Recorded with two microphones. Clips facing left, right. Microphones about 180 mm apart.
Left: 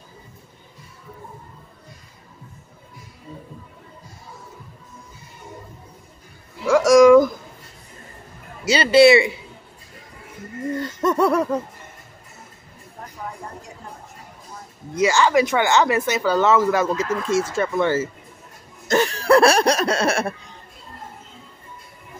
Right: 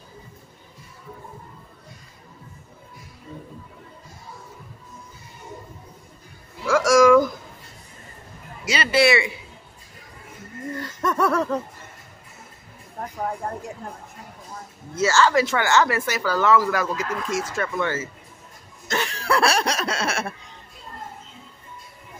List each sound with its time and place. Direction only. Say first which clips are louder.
6.6 s a sound: left 4 dB; 20° left (ahead or behind)
8.6 s speech: left 7 dB; 30° left (ahead or behind)
11.0 s laughter: left 3 dB; 20° left (ahead or behind)
15.0 s speech: left 2 dB; 15° left (ahead or behind)
18.9 s laughter: left 8 dB; 40° left (ahead or behind)